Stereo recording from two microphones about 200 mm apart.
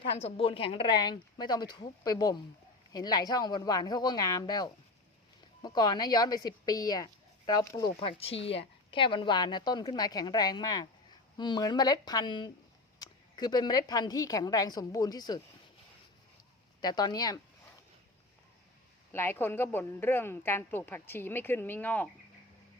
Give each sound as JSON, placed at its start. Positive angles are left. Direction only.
{"t": 0.2, "sound": "a woman's voice", "side_deg": 30}
{"t": 16.8, "sound": "a woman's voice", "side_deg": 20}
{"t": 19.1, "sound": "a woman's voice", "side_deg": 10}